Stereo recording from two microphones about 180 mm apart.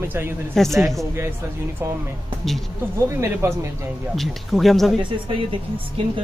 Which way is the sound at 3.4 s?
15° right (ahead or behind).